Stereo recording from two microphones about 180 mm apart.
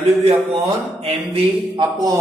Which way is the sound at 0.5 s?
35° right (ahead or behind).